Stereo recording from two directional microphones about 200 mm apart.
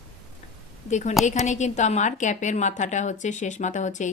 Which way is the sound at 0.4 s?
35° left (ahead or behind).